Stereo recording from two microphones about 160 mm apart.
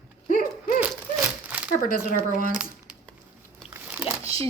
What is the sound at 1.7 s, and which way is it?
Speech, 55° left (ahead or behind).